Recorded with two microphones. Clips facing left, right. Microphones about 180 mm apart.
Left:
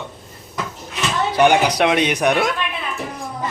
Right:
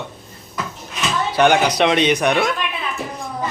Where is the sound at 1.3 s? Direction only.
10° left (ahead or behind).